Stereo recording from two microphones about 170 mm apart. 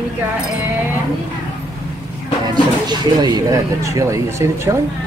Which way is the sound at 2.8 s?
25° right (ahead or behind).